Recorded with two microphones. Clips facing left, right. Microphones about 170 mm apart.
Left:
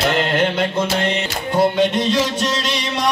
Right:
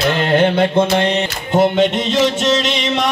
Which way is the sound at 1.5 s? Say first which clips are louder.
Right 3 dB; 20° right (ahead or behind).